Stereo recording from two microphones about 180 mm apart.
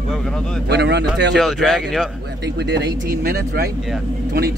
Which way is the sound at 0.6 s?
70° right (ahead or behind).